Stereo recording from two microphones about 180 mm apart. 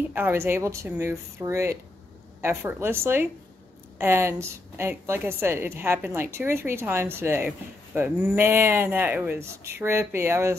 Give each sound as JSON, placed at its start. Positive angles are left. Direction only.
{"t": 0.1, "sound": "speech", "side_deg": -10}